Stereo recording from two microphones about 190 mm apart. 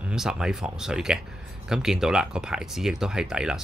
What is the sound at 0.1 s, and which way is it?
Speech, 5° right (ahead or behind).